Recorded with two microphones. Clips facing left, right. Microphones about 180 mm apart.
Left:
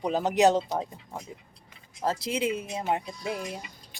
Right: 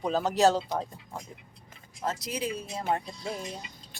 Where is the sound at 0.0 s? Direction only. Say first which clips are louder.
Left 1 dB; 15° left (ahead or behind).